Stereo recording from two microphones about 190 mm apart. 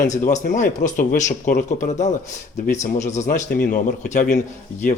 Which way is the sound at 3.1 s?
40° left (ahead or behind).